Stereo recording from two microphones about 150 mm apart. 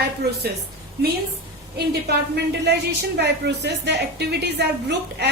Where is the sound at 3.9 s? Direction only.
90° right.